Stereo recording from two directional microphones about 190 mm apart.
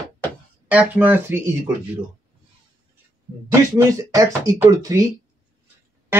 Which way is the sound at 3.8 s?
15° right (ahead or behind).